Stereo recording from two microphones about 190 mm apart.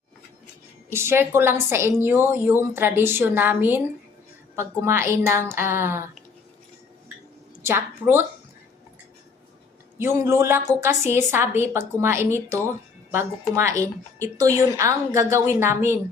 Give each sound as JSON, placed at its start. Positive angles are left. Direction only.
{"t": 0.9, "sound": "a woman's voice", "side_deg": -15}
{"t": 7.6, "sound": "a woman's voice", "side_deg": -10}
{"t": 10.0, "sound": "a woman's voice", "side_deg": -15}